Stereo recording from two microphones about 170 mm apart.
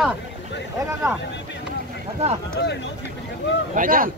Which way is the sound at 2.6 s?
90° left.